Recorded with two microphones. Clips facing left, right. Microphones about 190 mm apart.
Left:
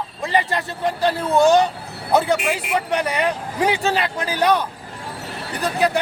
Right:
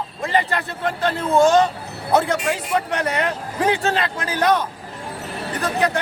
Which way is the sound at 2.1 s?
10° left (ahead or behind).